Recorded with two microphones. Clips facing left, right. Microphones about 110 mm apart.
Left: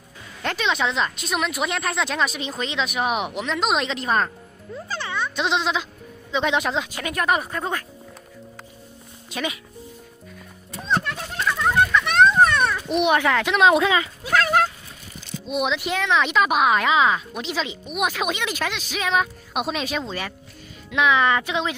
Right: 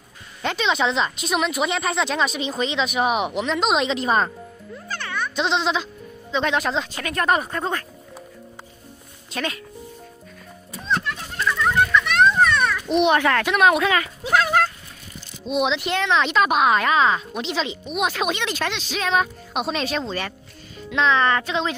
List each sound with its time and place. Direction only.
0.4 s speech: centre (ahead or behind)
4.8 s music: 25° left (ahead or behind)
5.3 s speech: 5° left (ahead or behind)
7.2 s speech: centre (ahead or behind)
9.3 s speech: 10° left (ahead or behind)
11.0 s children playing: 20° left (ahead or behind)
12.2 s a sound: 45° left (ahead or behind)
12.5 s a sound: 25° left (ahead or behind)
12.8 s speech: 10° left (ahead or behind)
15.4 s speech: 5° left (ahead or behind)